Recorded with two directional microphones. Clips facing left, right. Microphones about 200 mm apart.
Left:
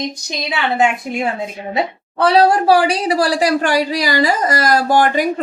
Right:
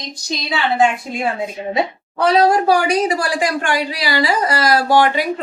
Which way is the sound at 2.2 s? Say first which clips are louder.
Left 1 dB; 30° left (ahead or behind).